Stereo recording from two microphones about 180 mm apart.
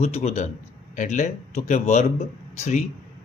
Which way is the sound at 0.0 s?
35° left (ahead or behind).